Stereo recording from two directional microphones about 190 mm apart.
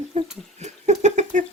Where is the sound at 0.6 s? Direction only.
35° right (ahead or behind).